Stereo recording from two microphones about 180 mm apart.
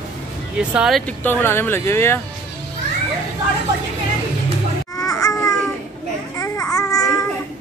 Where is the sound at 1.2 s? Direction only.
10° left (ahead or behind).